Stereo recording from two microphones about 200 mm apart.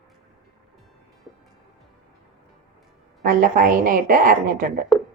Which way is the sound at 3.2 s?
45° right (ahead or behind).